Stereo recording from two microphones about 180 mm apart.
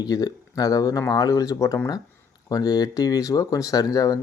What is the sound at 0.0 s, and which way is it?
Speech, 20° left (ahead or behind).